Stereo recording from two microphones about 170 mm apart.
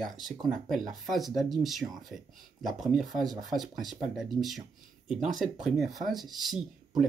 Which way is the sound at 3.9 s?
Centre (ahead or behind).